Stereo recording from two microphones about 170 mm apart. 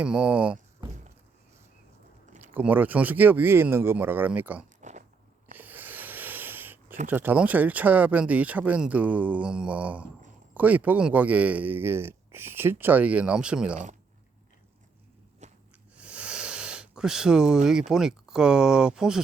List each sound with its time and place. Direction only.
0.0 s speech: 5° right (ahead or behind)
2.6 s speech: 10° right (ahead or behind)
4.8 s biting: 45° right (ahead or behind)
5.5 s a sound: 10° right (ahead or behind)
7.1 s speech: 10° right (ahead or behind)
15.4 s snort: 45° right (ahead or behind)
16.0 s speech: 5° right (ahead or behind)